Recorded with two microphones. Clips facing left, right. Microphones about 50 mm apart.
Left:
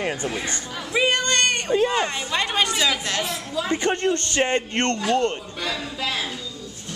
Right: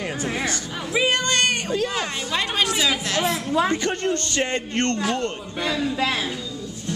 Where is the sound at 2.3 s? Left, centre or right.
Centre.